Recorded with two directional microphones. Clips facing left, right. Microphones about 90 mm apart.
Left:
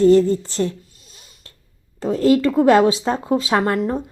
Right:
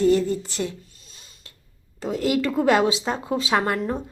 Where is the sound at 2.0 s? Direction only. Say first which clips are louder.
Left 7 dB; 30° left (ahead or behind).